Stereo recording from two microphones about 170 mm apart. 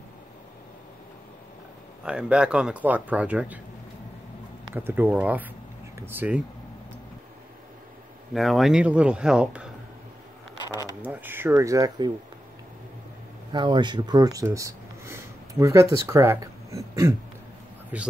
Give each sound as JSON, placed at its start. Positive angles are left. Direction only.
{"t": 2.0, "sound": "speech", "side_deg": -5}
{"t": 4.7, "sound": "speech", "side_deg": -10}
{"t": 8.3, "sound": "speech", "side_deg": 0}
{"t": 11.1, "sound": "speech", "side_deg": -10}
{"t": 13.5, "sound": "speech", "side_deg": -25}
{"t": 17.9, "sound": "speech", "side_deg": -10}